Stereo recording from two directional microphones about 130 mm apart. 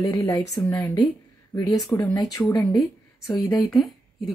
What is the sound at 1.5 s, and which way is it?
Speech, 30° left (ahead or behind).